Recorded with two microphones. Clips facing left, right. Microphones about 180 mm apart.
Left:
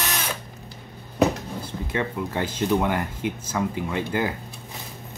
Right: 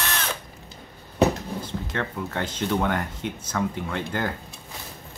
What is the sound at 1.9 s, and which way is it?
Speech, 10° left (ahead or behind).